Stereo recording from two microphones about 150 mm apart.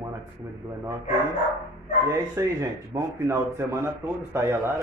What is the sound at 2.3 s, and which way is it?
Speech, 20° right (ahead or behind).